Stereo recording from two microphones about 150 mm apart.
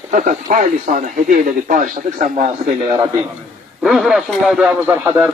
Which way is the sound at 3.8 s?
Centre (ahead or behind).